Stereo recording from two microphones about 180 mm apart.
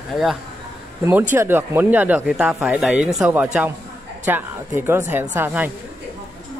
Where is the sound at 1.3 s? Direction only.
10° right (ahead or behind).